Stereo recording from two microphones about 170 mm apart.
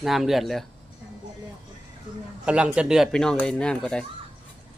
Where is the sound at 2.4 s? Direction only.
5° right (ahead or behind).